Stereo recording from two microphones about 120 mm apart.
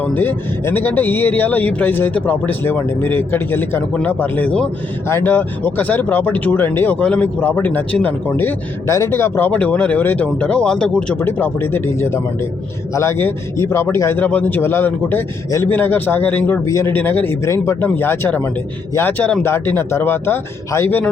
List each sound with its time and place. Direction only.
0.0 s speech: 15° left (ahead or behind)